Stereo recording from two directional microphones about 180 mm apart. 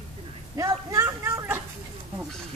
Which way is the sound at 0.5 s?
15° right (ahead or behind).